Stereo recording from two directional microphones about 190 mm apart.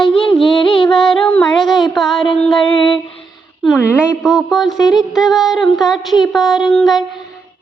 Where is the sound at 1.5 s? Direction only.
Centre (ahead or behind).